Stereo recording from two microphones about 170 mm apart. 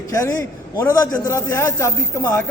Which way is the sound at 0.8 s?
15° left (ahead or behind).